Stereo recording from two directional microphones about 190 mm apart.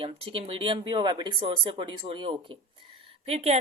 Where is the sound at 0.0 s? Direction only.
25° right (ahead or behind).